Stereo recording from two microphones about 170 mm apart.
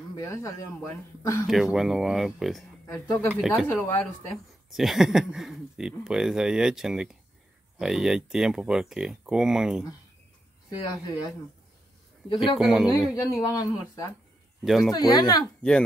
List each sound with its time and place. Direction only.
0.1 s a man's voice: 20° left (ahead or behind)
1.5 s speech: centre (ahead or behind)
2.9 s speech: 15° left (ahead or behind)
3.3 s speech: centre (ahead or behind)
3.8 s speech: 15° left (ahead or behind)
4.6 s speech: centre (ahead or behind)
10.7 s a man's voice: 25° left (ahead or behind)
12.5 s speech: 5° right (ahead or behind)
13.1 s a man's voice: 20° left (ahead or behind)
14.6 s speech: centre (ahead or behind)
14.9 s a man's voice: 25° left (ahead or behind)